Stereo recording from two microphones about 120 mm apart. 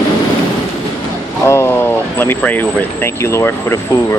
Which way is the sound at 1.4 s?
25° left (ahead or behind).